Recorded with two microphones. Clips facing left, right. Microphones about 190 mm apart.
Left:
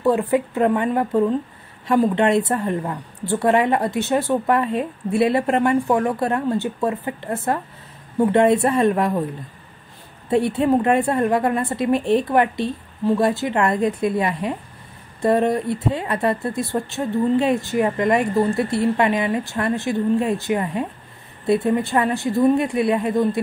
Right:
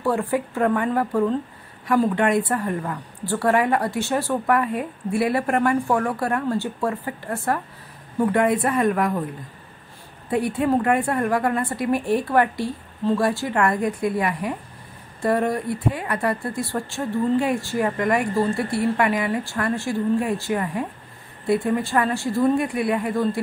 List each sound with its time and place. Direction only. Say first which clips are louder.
0.0 s a woman's voice: left 4 dB; 20° left (ahead or behind)
10.3 s a woman's voice: left 3 dB; 25° left (ahead or behind)